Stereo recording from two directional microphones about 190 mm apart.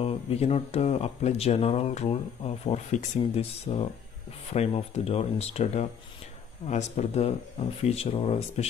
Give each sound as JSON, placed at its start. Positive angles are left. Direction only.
{"t": 0.0, "sound": "speech", "side_deg": 30}